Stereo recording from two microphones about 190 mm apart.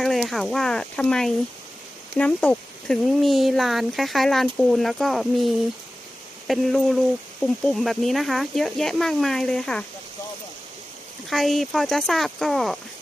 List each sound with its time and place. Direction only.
0.0 s speech: centre (ahead or behind)
6.5 s speech: centre (ahead or behind)
11.3 s speech: centre (ahead or behind)